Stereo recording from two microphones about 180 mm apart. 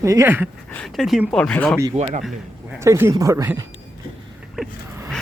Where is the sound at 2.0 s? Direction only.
40° right (ahead or behind).